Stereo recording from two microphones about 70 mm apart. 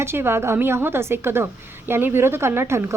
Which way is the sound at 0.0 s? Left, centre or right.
Right.